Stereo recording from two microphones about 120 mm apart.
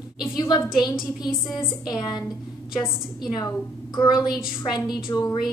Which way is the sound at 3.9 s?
35° left (ahead or behind).